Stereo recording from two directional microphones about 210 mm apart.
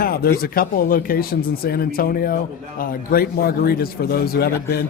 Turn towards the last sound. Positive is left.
turn(degrees=45)  # may be behind; listen again after turning